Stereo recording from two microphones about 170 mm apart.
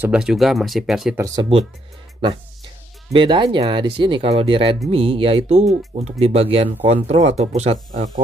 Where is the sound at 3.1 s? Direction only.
25° right (ahead or behind); by 8.0 s 45° right (ahead or behind).